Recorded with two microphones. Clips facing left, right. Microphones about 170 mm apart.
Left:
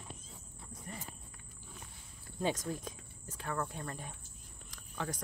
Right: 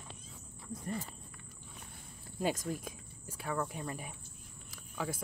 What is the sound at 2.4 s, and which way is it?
Speech, 10° right (ahead or behind).